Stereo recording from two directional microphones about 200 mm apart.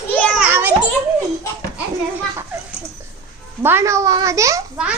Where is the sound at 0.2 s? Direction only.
5° left (ahead or behind).